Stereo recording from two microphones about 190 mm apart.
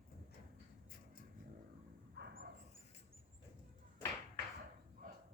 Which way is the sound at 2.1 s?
60° right (ahead or behind).